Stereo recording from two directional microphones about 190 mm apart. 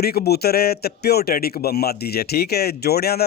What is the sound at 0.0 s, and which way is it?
A man's voice, 55° left (ahead or behind).